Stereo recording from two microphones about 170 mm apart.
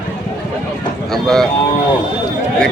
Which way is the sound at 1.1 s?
Centre (ahead or behind).